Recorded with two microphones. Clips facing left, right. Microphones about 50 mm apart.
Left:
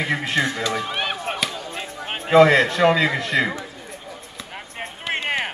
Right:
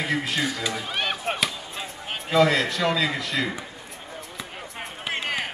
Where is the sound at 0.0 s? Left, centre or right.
Left.